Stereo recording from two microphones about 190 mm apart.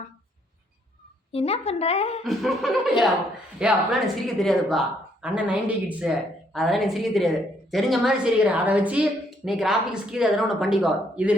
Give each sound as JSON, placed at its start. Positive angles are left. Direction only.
{"t": 1.3, "sound": "a woman's voice", "side_deg": 30}
{"t": 2.2, "sound": "a woman's voice", "side_deg": 0}